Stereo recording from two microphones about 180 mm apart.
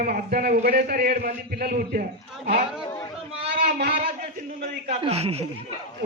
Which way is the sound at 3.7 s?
65° right (ahead or behind).